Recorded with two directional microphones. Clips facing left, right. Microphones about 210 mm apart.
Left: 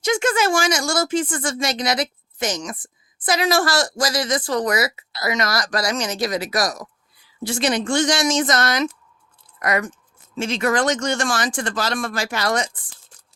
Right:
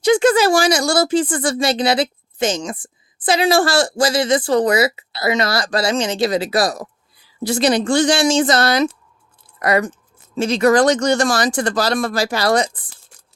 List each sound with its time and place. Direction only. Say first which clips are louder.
0.0 s speech: right 7 dB; 35° right (ahead or behind)